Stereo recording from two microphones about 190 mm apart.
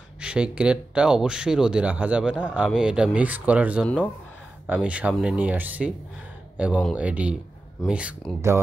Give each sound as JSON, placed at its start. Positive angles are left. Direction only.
{"t": 0.2, "sound": "speech", "side_deg": -5}